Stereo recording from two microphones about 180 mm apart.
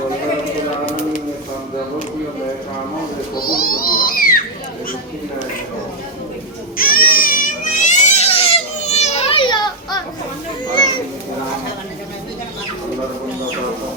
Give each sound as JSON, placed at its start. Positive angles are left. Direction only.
{"t": 3.3, "sound": "cat", "side_deg": 55}
{"t": 6.7, "sound": "baby cry", "side_deg": 55}